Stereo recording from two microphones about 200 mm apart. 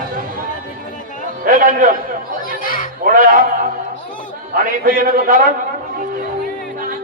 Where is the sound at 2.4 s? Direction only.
45° left (ahead or behind).